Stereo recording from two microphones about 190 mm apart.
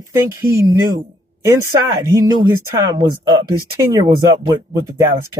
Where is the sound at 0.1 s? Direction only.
15° right (ahead or behind).